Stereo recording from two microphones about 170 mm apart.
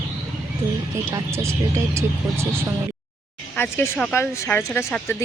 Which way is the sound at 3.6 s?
10° left (ahead or behind).